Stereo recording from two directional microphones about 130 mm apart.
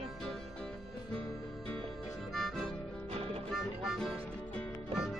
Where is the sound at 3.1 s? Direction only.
50° right (ahead or behind).